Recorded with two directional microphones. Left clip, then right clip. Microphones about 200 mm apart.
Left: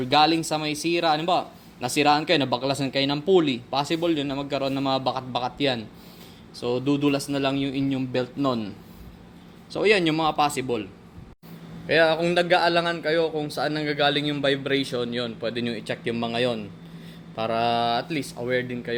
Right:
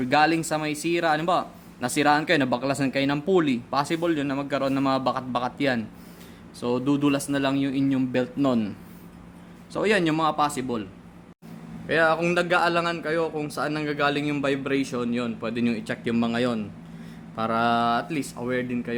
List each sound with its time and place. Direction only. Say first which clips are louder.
0.0 s a man's voice: left 1 dB; 10° right (ahead or behind)
9.7 s a man's voice: left 2 dB; 15° right (ahead or behind)
11.9 s a man's voice: left 1 dB; 10° right (ahead or behind)